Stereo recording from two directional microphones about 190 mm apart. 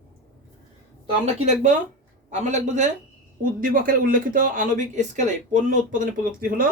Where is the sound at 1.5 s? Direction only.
40° right (ahead or behind).